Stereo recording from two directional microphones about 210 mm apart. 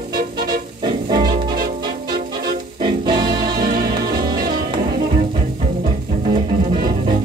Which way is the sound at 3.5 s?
45° right (ahead or behind).